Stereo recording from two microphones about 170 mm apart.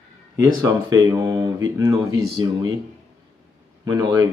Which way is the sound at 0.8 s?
20° right (ahead or behind).